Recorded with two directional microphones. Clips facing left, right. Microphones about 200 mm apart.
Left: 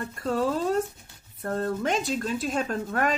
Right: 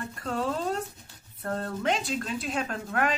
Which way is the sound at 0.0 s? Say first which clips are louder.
Left 4 dB; 40° left (ahead or behind).